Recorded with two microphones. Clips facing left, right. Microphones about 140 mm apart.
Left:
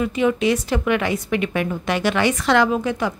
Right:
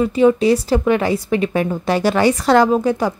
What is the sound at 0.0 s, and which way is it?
A woman's voice, 35° right (ahead or behind).